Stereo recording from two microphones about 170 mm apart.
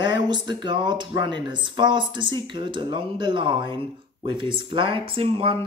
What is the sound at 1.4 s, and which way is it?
Speech, 25° right (ahead or behind).